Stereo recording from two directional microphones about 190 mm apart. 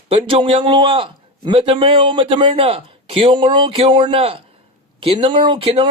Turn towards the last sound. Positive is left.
turn(degrees=-25)  # may be behind; listen again after turning